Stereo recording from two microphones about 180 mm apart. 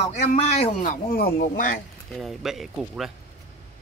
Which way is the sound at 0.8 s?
55° left (ahead or behind).